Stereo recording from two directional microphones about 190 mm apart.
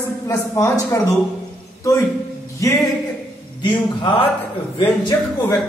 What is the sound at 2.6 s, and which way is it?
Speech, 15° left (ahead or behind).